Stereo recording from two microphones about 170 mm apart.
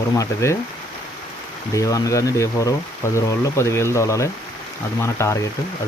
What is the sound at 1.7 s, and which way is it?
Speech, 20° left (ahead or behind).